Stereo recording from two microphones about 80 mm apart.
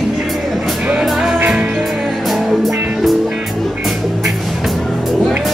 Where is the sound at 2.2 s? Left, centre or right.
Centre.